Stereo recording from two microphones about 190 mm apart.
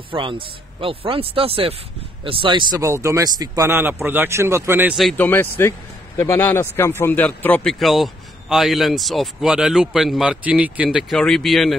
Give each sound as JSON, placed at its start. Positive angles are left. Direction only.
{"t": 0.1, "sound": "speech", "side_deg": -25}
{"t": 4.9, "sound": "speech", "side_deg": 5}